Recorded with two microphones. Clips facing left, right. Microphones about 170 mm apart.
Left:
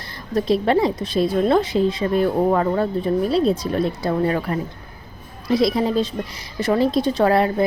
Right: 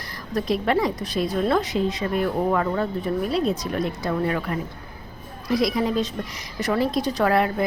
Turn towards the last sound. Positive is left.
turn(degrees=30)  # may be behind; listen again after turning